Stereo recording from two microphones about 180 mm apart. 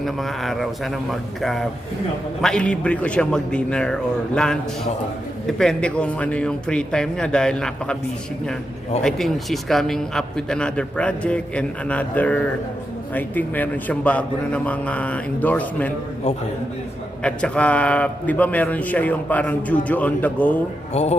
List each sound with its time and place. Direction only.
0.0 s a man's voice: centre (ahead or behind)
9.0 s a man's voice: centre (ahead or behind)
17.2 s a man's voice: 5° left (ahead or behind)
20.9 s speech: 35° left (ahead or behind)